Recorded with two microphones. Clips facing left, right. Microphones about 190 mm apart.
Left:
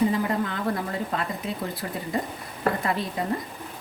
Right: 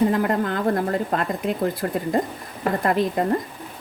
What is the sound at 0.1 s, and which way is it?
A woman's voice, 55° right (ahead or behind).